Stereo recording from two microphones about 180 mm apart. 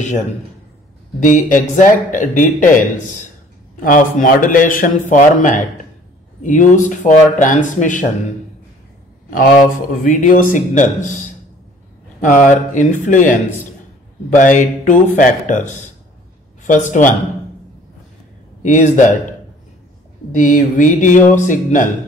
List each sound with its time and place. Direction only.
1.2 s speech: 45° left (ahead or behind)
10.0 s speech: 50° left (ahead or behind)
18.6 s speech: 45° left (ahead or behind)
20.3 s speech: 45° left (ahead or behind)